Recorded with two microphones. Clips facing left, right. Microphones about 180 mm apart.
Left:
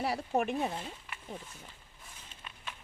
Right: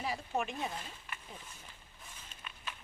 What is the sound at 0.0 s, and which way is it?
Speech, 60° left (ahead or behind).